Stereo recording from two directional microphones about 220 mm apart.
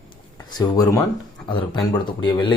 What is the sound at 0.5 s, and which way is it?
Speech, 15° left (ahead or behind).